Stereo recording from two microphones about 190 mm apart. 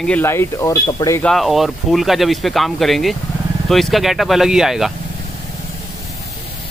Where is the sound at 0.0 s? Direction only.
10° left (ahead or behind).